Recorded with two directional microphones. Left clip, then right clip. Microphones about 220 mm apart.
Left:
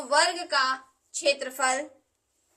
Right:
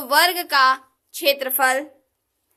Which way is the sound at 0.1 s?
40° right (ahead or behind).